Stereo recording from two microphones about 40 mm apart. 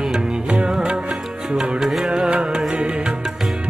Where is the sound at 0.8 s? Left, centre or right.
Right.